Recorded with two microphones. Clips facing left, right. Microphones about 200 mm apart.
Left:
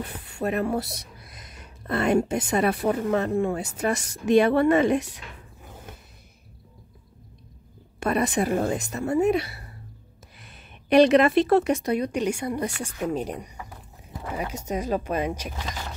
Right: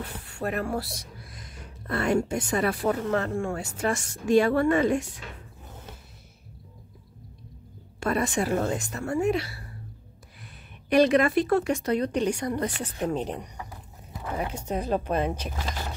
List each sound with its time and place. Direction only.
0.0 s speech: 20° left (ahead or behind)
8.0 s a woman's voice: 20° left (ahead or behind)
10.4 s a sound: 25° left (ahead or behind)
11.4 s speech: 25° left (ahead or behind)